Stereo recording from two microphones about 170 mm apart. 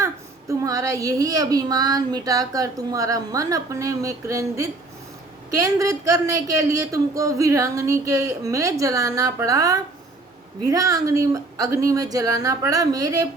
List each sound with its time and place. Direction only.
0.0 s a child's voice: 20° right (ahead or behind)